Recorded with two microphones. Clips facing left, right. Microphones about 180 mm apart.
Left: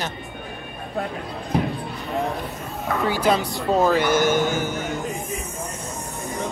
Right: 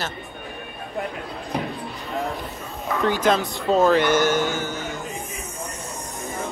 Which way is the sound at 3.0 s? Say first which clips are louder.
Right 1 dB; 10° left (ahead or behind).